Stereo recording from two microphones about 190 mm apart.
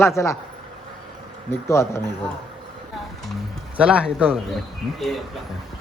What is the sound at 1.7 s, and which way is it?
Speech, 15° left (ahead or behind).